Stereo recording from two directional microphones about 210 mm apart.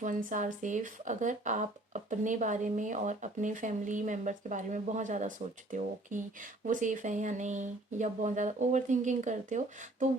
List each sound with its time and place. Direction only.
0.0 s speech: 35° right (ahead or behind)